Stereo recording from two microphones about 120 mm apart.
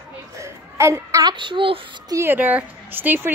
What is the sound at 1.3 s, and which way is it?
Speech, 45° right (ahead or behind).